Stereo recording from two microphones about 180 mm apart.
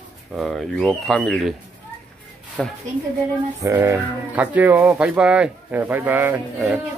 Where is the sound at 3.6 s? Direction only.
15° right (ahead or behind).